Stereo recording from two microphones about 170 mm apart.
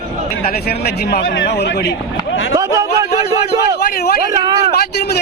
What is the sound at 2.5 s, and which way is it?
Speech, 20° right (ahead or behind).